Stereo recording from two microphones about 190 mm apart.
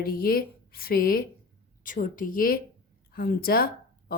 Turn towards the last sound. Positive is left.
turn(degrees=50)  # may be behind; listen again after turning